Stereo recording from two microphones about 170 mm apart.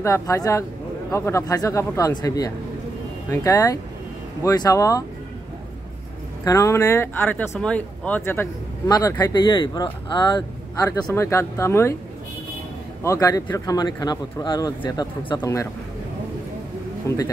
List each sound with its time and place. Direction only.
0.0 s speech: 15° left (ahead or behind)
6.4 s speech: 20° left (ahead or behind)
13.0 s speech: 20° left (ahead or behind)
17.1 s speech: 15° left (ahead or behind)